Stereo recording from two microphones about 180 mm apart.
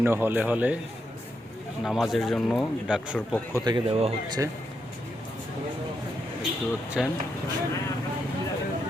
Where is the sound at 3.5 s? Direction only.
25° right (ahead or behind).